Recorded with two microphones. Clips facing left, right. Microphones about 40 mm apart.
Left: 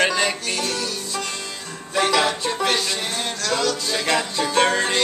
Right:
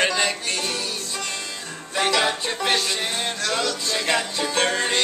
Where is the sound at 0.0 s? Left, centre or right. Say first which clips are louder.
Left 2 dB; centre.